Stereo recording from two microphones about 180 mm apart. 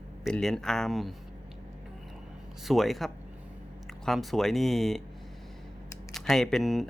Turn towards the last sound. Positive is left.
turn(degrees=0)  # may be behind; listen again after turning